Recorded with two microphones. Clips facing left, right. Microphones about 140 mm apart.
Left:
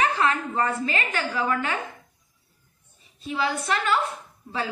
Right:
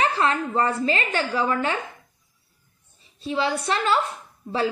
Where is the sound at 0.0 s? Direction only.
30° right (ahead or behind).